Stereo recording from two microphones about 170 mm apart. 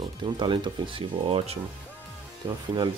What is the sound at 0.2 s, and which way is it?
Speech, 30° right (ahead or behind).